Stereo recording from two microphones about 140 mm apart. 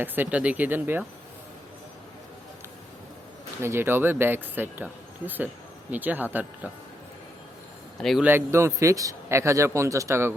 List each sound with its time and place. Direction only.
0.0 s speech: 15° right (ahead or behind)
3.6 s speech: 15° right (ahead or behind)
8.2 s a man's voice: 15° right (ahead or behind)